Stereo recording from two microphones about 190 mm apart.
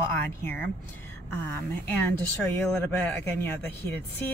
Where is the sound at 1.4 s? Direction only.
10° left (ahead or behind).